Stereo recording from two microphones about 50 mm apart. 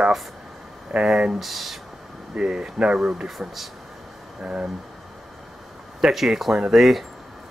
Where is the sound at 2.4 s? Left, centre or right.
Centre.